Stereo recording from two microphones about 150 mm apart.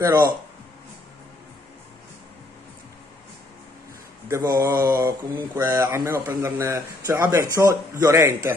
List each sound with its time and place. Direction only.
4.3 s speech: 25° right (ahead or behind)